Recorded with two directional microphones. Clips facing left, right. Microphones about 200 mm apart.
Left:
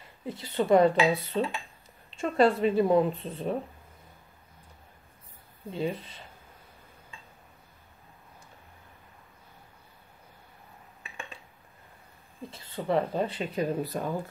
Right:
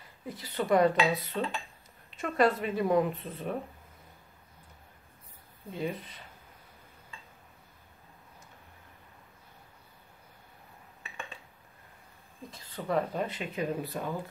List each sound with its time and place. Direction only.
0.3 s speech: 25° left (ahead or behind)
5.7 s speech: 25° left (ahead or behind)
12.4 s speech: 25° left (ahead or behind)